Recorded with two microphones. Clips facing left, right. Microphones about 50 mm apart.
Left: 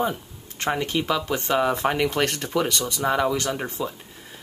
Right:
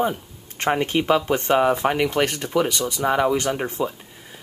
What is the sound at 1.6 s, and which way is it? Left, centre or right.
Speech, centre.